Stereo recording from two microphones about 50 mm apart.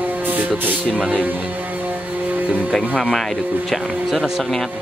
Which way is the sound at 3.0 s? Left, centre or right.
Centre.